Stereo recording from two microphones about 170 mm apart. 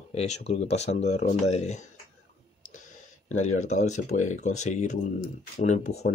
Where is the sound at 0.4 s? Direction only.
40° left (ahead or behind).